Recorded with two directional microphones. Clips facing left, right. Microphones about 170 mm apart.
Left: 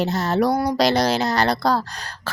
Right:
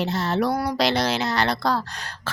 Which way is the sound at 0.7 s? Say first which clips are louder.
Left 4 dB; 40° left (ahead or behind).